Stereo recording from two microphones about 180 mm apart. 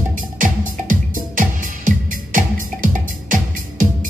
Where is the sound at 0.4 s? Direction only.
45° right (ahead or behind).